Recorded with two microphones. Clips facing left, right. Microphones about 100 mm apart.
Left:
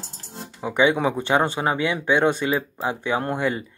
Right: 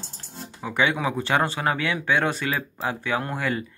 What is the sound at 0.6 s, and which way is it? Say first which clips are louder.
Speech: left 4 dB; 20° left (ahead or behind).